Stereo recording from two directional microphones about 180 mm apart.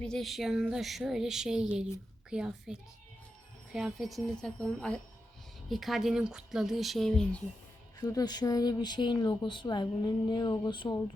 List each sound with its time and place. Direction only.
0.0 s speech: centre (ahead or behind)
8.0 s speech: 20° left (ahead or behind)